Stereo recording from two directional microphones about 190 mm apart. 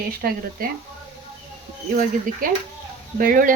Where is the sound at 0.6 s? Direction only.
50° right (ahead or behind).